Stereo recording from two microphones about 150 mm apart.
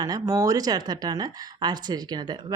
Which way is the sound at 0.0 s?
25° right (ahead or behind).